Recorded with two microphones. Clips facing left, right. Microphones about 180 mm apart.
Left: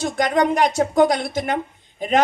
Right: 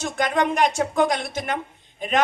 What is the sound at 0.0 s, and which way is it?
A man's voice, 40° left (ahead or behind).